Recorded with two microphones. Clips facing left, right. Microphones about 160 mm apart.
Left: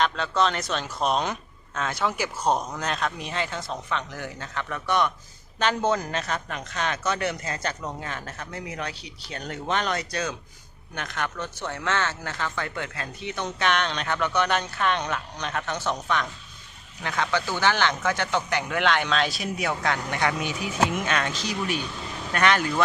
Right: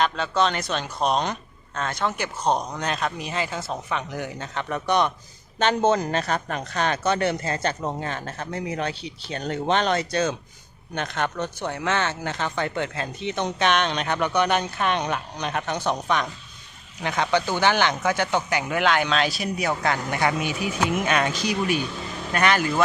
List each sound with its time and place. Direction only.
0.0 s speech: centre (ahead or behind)